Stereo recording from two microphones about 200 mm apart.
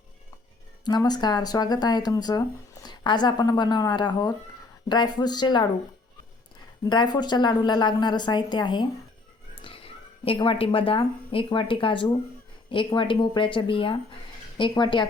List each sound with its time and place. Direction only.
0.9 s speech: 20° left (ahead or behind)
6.8 s a woman's voice: 20° left (ahead or behind)